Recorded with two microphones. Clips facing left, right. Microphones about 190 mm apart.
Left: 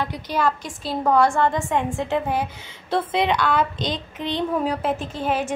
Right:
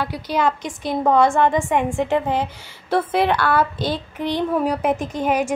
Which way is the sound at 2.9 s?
5° right (ahead or behind).